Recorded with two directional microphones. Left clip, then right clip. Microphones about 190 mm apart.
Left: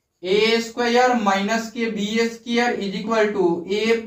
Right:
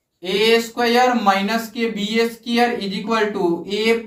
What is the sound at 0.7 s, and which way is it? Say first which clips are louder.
Speech: right 1 dB; 10° left (ahead or behind).